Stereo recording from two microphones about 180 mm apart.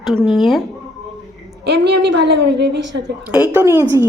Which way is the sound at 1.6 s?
70° right (ahead or behind).